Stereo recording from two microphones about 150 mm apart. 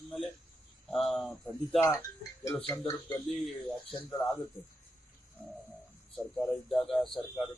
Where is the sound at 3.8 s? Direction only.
35° left (ahead or behind).